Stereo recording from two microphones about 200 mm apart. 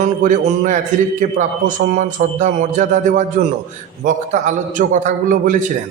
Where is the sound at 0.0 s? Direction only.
40° right (ahead or behind).